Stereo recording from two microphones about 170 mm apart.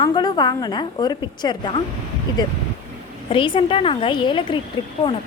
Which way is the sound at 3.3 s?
30° left (ahead or behind).